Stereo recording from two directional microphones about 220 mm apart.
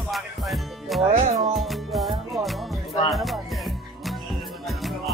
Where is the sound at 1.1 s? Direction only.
30° right (ahead or behind).